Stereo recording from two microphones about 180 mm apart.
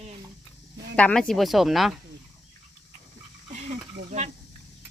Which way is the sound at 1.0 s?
5° left (ahead or behind).